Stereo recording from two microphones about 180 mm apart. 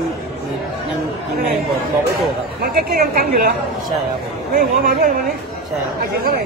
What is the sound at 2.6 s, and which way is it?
Speech, 60° right (ahead or behind).